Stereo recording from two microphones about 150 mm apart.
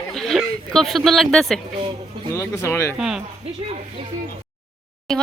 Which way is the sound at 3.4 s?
40° right (ahead or behind).